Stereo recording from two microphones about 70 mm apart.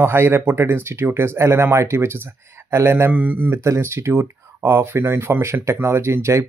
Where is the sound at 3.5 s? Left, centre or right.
Right.